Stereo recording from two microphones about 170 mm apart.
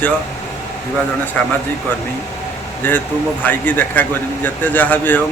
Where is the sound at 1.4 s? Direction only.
5° left (ahead or behind).